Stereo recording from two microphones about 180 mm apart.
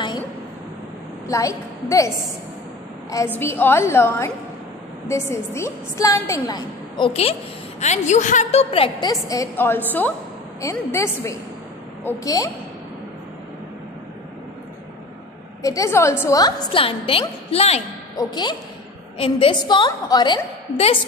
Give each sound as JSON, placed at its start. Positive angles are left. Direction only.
{"t": 1.2, "sound": "a woman's voice", "side_deg": 15}
{"t": 3.3, "sound": "a woman's voice", "side_deg": 10}
{"t": 7.8, "sound": "a woman's voice", "side_deg": 40}
{"t": 9.3, "sound": "a woman's voice", "side_deg": 15}
{"t": 15.6, "sound": "a woman's voice", "side_deg": 20}
{"t": 18.1, "sound": "a woman's voice", "side_deg": 25}